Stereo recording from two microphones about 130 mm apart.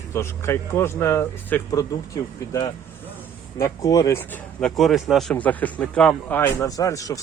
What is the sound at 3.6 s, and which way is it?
Speech, 25° left (ahead or behind).